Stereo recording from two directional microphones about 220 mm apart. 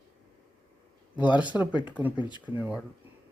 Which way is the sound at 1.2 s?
5° right (ahead or behind).